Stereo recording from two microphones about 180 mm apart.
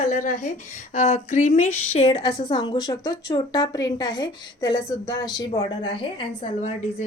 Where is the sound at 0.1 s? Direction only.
45° left (ahead or behind).